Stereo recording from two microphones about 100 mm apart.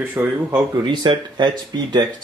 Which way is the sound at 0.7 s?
50° right (ahead or behind).